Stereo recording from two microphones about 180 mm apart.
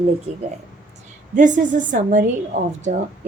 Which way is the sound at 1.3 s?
45° right (ahead or behind).